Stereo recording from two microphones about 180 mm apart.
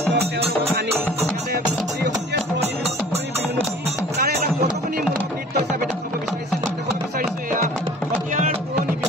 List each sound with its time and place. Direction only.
4.2 s music: 60° right (ahead or behind)